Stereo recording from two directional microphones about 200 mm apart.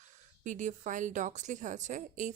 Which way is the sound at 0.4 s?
40° right (ahead or behind).